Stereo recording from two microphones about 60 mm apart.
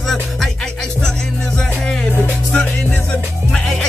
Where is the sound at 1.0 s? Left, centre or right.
Centre.